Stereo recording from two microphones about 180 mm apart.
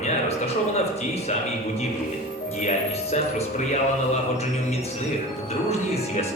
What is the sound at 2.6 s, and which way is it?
Speech, 40° left (ahead or behind).